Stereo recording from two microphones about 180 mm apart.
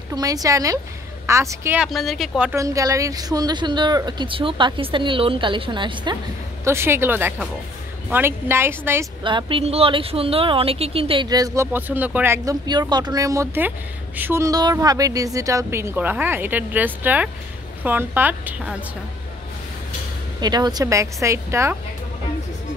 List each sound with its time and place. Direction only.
0.1 s speech: 20° right (ahead or behind)
1.9 s speech: centre (ahead or behind)
2.5 s speech: 15° right (ahead or behind)
6.6 s speech: 15° right (ahead or behind)
9.2 s speech: 30° right (ahead or behind); by 12.5 s 10° right (ahead or behind)
12.6 s speech: 25° right (ahead or behind)
20.3 s speech: 20° right (ahead or behind)